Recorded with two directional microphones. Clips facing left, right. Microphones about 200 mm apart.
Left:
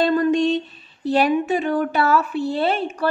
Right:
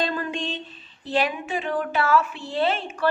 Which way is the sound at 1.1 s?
40° left (ahead or behind).